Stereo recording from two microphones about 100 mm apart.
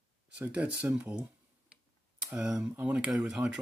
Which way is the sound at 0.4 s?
15° right (ahead or behind).